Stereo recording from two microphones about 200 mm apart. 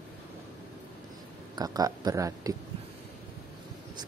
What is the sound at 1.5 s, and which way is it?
Speech, 20° right (ahead or behind).